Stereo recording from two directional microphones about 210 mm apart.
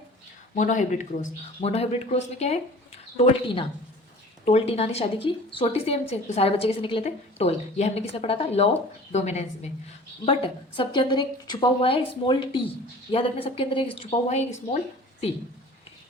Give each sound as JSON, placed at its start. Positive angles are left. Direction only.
{"t": 0.5, "sound": "a woman's voice", "side_deg": 35}